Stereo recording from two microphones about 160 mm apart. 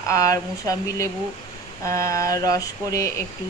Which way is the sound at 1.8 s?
20° left (ahead or behind).